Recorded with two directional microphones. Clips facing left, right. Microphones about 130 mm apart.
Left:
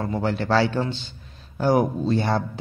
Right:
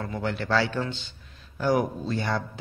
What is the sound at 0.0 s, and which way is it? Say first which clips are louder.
Speech: left 5 dB; 30° left (ahead or behind).